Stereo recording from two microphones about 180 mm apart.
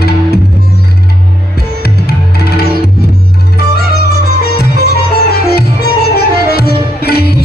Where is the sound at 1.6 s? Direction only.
60° left (ahead or behind).